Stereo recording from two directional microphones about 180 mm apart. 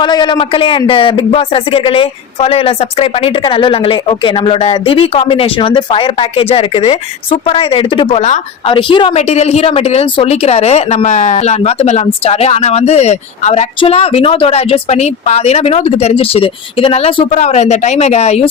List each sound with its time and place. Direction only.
0.0 s speech: 25° left (ahead or behind)